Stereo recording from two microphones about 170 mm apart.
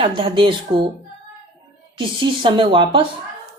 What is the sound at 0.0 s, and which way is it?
Speech, 30° right (ahead or behind).